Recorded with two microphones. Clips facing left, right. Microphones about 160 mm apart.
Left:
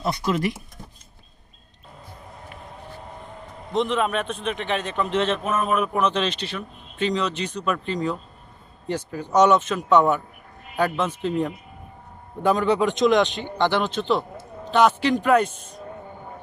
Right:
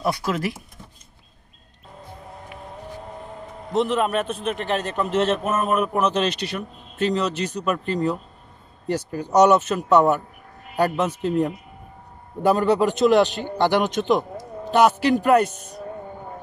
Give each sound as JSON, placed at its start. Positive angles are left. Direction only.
{"t": 0.0, "sound": "a man's voice", "side_deg": -5}
{"t": 3.7, "sound": "a man's voice", "side_deg": -5}
{"t": 8.8, "sound": "speech", "side_deg": -45}
{"t": 9.2, "sound": "a man's voice", "side_deg": -10}